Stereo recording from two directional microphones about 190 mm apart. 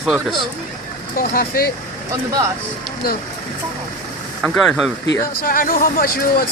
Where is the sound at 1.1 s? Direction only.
50° left (ahead or behind).